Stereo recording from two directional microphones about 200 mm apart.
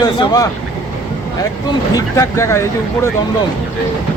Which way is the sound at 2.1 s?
15° left (ahead or behind).